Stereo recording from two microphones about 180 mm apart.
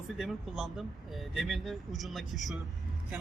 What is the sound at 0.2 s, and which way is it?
Speech, centre (ahead or behind).